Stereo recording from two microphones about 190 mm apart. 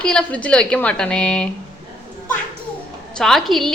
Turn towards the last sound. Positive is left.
turn(degrees=0)  # may be behind; listen again after turning